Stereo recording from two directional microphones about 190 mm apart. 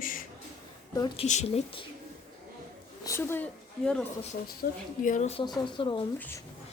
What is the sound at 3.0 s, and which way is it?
A woman's voice, 15° left (ahead or behind).